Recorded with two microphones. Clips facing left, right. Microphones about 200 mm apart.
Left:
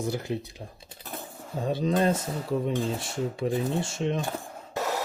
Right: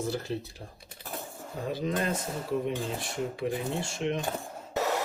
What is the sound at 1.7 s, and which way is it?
Speech, 30° left (ahead or behind).